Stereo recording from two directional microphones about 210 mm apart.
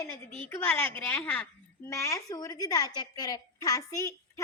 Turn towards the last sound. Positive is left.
turn(degrees=15)  # may be behind; listen again after turning